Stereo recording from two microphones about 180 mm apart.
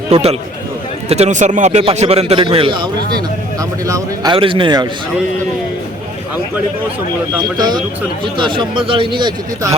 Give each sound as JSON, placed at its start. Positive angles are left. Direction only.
{"t": 0.1, "sound": "a man's voice", "side_deg": -35}
{"t": 7.5, "sound": "a man's voice", "side_deg": -25}